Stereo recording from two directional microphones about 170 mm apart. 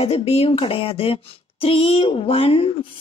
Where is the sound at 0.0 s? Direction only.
35° left (ahead or behind).